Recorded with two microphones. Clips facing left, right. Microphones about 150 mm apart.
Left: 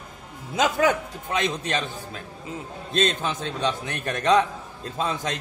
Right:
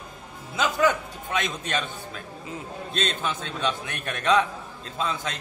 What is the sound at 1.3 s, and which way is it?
Speech, 35° left (ahead or behind).